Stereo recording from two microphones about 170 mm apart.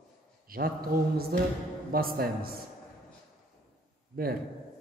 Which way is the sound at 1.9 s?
60° right (ahead or behind).